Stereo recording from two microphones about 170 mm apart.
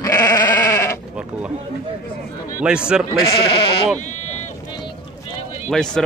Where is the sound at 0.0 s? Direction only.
20° left (ahead or behind).